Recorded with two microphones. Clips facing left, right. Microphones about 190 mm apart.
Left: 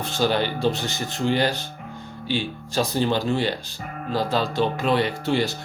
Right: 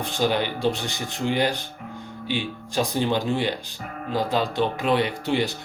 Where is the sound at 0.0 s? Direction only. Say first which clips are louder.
Left 1 dB; 15° right (ahead or behind).